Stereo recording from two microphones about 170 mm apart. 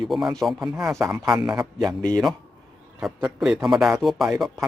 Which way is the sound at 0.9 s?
15° right (ahead or behind).